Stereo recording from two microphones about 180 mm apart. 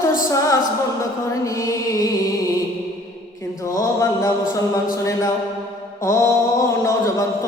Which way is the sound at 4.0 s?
15° left (ahead or behind).